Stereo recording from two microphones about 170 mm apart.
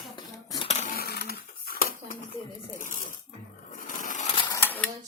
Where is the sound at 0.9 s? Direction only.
65° left (ahead or behind).